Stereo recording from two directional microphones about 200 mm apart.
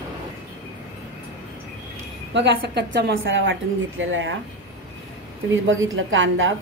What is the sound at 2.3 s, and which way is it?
A woman's voice, 60° right (ahead or behind).